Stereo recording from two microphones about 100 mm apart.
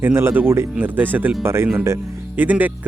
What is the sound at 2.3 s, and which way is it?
Speech, 15° right (ahead or behind).